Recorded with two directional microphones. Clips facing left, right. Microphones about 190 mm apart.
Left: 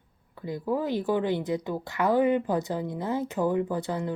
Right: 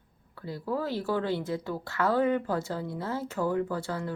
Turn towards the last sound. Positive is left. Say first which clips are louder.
# left 3 dB
turn(degrees=20)  # may be behind; listen again after turning